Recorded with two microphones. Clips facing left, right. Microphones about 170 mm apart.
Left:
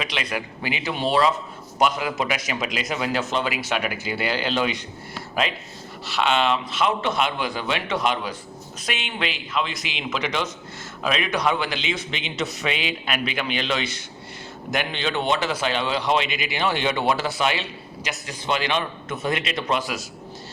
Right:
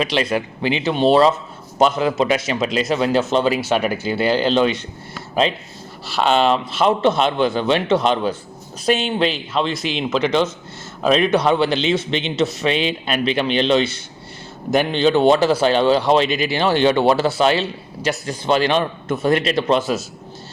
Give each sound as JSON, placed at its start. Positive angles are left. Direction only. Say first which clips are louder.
{"t": 0.0, "sound": "a man's voice", "louder": "right 9 dB", "side_deg": -35}